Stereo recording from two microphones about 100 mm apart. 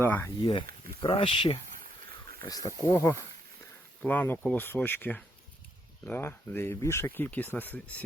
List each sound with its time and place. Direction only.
0.0 s speech: 20° left (ahead or behind)
1.0 s speech: 70° left (ahead or behind)
2.5 s speech: 35° left (ahead or behind)
2.9 s speech: 25° left (ahead or behind)